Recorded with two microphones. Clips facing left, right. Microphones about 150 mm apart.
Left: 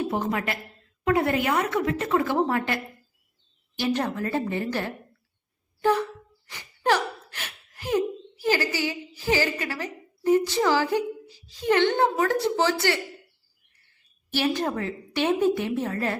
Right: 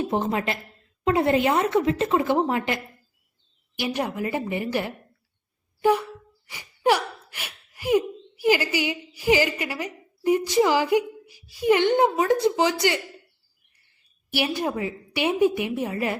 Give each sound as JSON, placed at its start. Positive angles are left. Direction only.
{"t": 0.0, "sound": "a woman's voice", "side_deg": -25}
{"t": 14.3, "sound": "a woman's voice", "side_deg": -10}